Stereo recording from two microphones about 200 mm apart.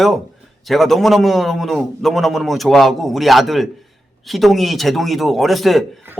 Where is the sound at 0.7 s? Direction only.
Centre (ahead or behind).